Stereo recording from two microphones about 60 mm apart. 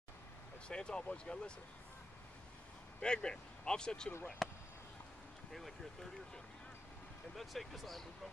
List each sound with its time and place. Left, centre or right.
0.7 s speech: centre
3.0 s speech: centre
4.4 s chop: centre
7.3 s speech: centre